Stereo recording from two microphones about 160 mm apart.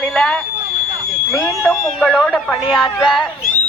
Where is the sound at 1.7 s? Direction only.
5° left (ahead or behind).